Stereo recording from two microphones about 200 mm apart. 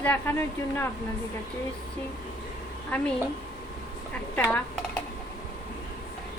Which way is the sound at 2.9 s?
5° left (ahead or behind).